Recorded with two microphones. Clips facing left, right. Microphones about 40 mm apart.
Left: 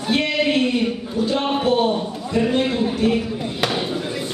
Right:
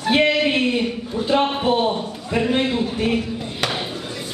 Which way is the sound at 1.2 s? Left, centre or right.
Right.